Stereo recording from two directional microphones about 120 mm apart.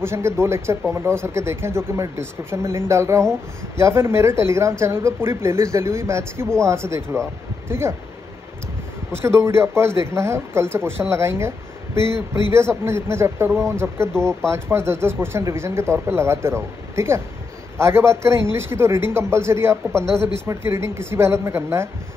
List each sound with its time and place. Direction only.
0.0 s speech: 20° right (ahead or behind)
9.1 s speech: 20° right (ahead or behind)